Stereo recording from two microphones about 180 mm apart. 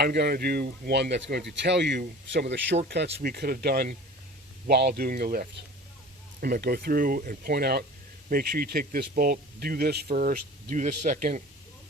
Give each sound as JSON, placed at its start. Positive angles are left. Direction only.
{"t": 0.0, "sound": "speech", "side_deg": -60}
{"t": 2.9, "sound": "speech", "side_deg": -65}